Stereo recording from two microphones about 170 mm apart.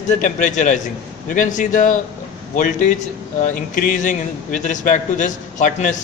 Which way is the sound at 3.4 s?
50° left (ahead or behind).